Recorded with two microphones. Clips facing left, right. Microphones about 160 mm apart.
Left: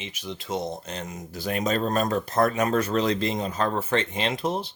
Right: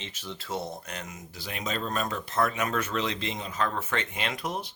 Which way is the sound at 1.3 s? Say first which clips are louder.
Left 8 dB; 45° left (ahead or behind).